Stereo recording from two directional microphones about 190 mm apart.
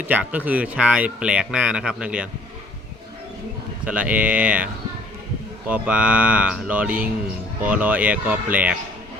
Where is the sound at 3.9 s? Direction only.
5° right (ahead or behind).